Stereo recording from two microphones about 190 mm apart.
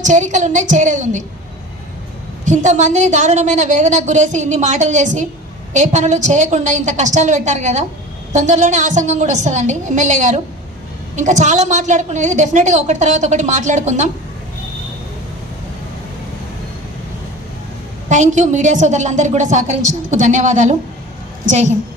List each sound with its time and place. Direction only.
0.0 s a woman's voice: 40° right (ahead or behind)
2.4 s a woman's voice: 40° right (ahead or behind)
18.0 s a woman's voice: 40° right (ahead or behind)